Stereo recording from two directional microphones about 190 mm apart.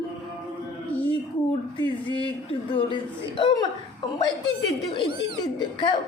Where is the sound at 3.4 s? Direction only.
25° left (ahead or behind).